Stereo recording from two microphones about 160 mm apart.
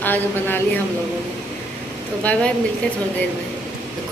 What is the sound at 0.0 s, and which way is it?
Speech, 10° left (ahead or behind).